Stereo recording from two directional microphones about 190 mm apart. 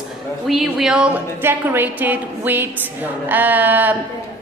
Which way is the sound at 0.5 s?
Centre (ahead or behind).